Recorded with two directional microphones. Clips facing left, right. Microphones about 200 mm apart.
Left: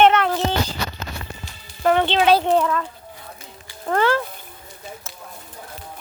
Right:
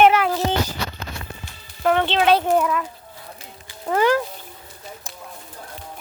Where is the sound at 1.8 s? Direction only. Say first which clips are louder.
Left 1 dB; centre (ahead or behind).